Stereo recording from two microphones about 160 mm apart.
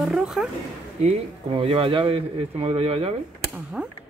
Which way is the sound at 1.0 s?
35° right (ahead or behind).